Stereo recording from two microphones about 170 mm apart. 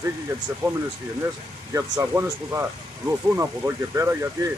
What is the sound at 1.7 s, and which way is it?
Speech, 20° right (ahead or behind).